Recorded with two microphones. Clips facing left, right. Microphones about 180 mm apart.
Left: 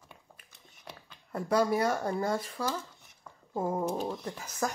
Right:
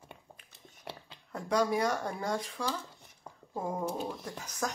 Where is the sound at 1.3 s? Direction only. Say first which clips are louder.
Left 2 dB; 5° left (ahead or behind).